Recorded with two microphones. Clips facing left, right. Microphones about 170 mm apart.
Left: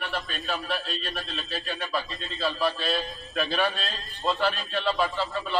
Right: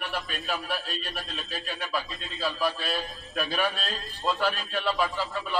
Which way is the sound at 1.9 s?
Centre (ahead or behind).